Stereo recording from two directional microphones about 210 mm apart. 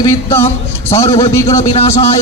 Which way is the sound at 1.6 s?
30° left (ahead or behind).